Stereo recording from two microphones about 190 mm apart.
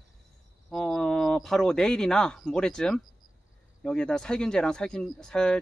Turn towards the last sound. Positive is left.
turn(degrees=5)  # may be behind; listen again after turning